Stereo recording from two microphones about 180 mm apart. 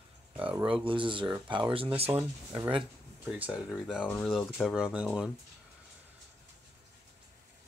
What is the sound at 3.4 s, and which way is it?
Speech, 5° right (ahead or behind).